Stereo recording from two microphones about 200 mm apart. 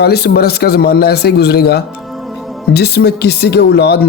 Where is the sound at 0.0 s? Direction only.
55° left (ahead or behind).